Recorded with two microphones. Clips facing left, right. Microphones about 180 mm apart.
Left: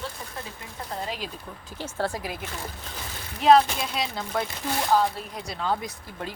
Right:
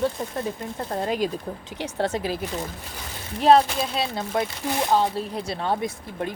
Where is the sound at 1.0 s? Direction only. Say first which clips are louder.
Right 10 dB; 45° right (ahead or behind).